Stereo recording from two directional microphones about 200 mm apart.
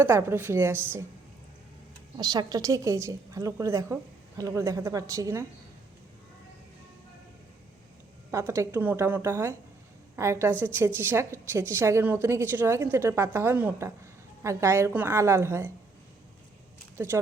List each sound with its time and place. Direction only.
0.0 s a woman's voice: 10° right (ahead or behind)
2.1 s a woman's voice: 20° right (ahead or behind)
8.3 s a woman's voice: 15° right (ahead or behind)
17.0 s a woman's voice: 10° right (ahead or behind)